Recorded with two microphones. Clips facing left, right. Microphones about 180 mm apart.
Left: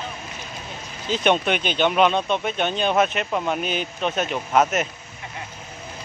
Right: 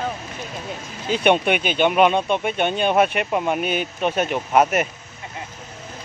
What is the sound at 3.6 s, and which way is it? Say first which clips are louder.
Speech: right 3 dB; 50° right (ahead or behind).